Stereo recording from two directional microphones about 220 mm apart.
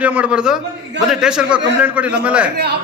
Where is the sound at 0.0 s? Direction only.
5° right (ahead or behind).